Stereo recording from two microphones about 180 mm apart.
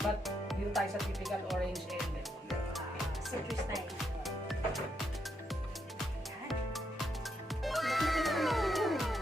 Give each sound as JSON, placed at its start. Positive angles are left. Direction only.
{"t": 0.0, "sound": "music", "side_deg": 0}
{"t": 3.5, "sound": "music", "side_deg": 0}
{"t": 6.5, "sound": "music", "side_deg": 0}